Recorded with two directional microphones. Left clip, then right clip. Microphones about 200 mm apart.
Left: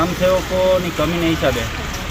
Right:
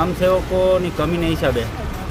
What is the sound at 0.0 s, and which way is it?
Speech, 15° right (ahead or behind).